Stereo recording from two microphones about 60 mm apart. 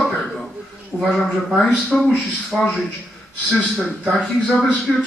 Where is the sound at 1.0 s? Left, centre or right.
Centre.